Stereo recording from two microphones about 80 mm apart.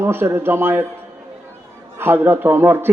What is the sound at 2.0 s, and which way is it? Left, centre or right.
Speech, right.